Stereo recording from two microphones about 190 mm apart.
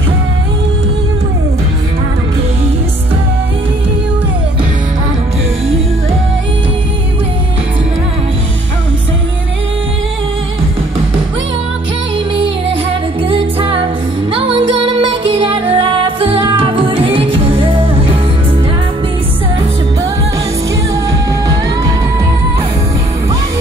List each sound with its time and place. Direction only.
13.3 s music: 30° right (ahead or behind)